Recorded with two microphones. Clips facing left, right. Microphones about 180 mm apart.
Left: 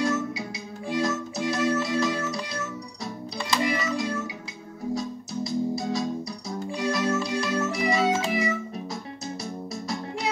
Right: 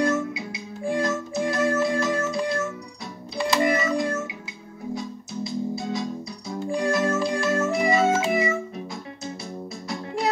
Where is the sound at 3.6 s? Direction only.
45° right (ahead or behind).